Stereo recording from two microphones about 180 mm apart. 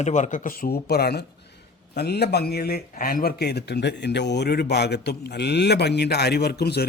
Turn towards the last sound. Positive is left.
turn(degrees=65)  # may be behind; listen again after turning